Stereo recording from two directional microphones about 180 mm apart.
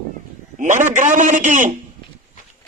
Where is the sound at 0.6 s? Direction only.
45° right (ahead or behind).